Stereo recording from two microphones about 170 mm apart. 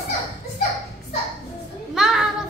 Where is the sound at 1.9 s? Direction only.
Centre (ahead or behind).